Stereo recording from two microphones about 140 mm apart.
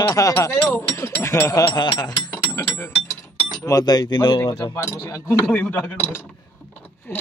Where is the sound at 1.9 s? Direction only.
25° left (ahead or behind).